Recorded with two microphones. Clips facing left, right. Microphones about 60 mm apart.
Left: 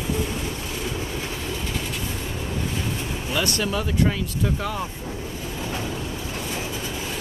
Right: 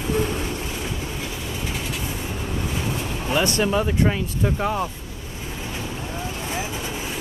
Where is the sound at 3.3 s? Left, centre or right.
Right.